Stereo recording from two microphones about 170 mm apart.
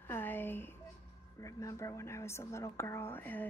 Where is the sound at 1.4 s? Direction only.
15° left (ahead or behind).